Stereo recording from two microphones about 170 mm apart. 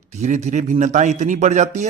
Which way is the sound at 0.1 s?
45° right (ahead or behind).